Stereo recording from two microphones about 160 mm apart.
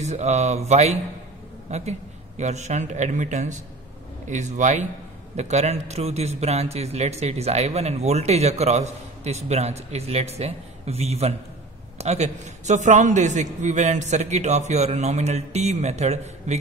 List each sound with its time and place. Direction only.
0.0 s a man's voice: 45° right (ahead or behind)